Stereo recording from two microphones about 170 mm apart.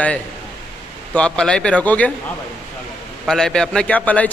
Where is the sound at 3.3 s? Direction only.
5° left (ahead or behind).